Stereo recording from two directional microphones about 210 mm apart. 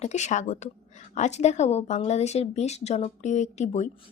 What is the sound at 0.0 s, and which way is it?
Speech, 35° left (ahead or behind).